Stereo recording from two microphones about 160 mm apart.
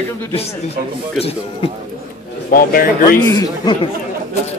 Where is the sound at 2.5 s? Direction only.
65° left (ahead or behind).